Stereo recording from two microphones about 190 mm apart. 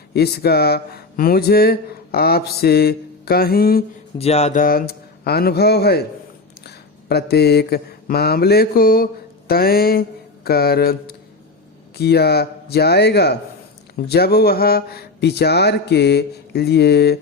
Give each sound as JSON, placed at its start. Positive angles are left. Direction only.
{"t": 0.1, "sound": "speech", "side_deg": 55}
{"t": 4.2, "sound": "speech", "side_deg": 35}
{"t": 4.6, "sound": "speech", "side_deg": 50}
{"t": 6.7, "sound": "mantra", "side_deg": 55}
{"t": 9.5, "sound": "speech", "side_deg": 55}